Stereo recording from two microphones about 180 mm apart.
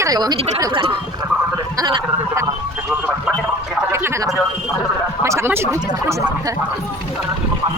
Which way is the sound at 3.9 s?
15° right (ahead or behind).